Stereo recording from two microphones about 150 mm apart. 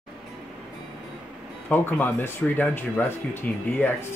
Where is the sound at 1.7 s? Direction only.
10° left (ahead or behind).